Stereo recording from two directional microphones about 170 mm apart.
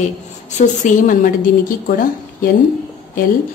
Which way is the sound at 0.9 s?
50° left (ahead or behind).